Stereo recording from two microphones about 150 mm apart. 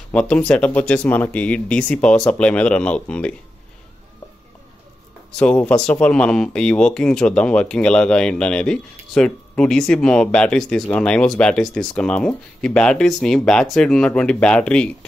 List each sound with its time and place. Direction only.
0.1 s speech: 10° left (ahead or behind)
5.4 s speech: 10° left (ahead or behind)